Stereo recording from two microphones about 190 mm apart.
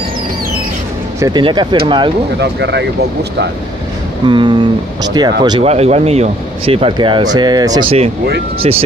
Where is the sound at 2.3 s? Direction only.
65° right (ahead or behind).